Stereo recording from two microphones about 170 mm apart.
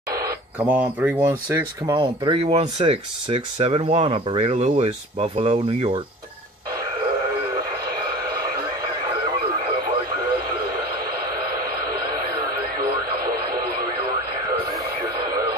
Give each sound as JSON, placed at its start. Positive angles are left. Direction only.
{"t": 0.6, "sound": "speech", "side_deg": -10}
{"t": 2.2, "sound": "speech", "side_deg": -35}
{"t": 7.5, "sound": "radio", "side_deg": -20}
{"t": 12.1, "sound": "radio", "side_deg": -25}